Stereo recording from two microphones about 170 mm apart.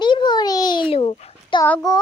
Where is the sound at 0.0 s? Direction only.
25° left (ahead or behind).